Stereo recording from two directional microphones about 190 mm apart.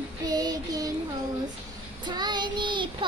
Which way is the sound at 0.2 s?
20° right (ahead or behind).